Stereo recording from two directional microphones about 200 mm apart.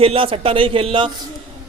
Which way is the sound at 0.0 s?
25° right (ahead or behind).